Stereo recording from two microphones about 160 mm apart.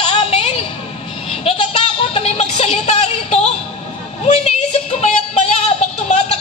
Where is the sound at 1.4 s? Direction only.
35° left (ahead or behind).